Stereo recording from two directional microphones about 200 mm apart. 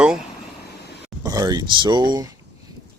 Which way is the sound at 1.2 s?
20° right (ahead or behind).